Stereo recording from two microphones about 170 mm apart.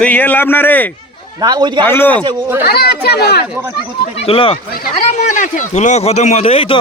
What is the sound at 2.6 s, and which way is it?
Speech, 70° left (ahead or behind).